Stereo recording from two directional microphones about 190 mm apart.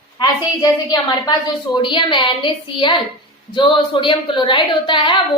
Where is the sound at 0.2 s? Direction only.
20° left (ahead or behind).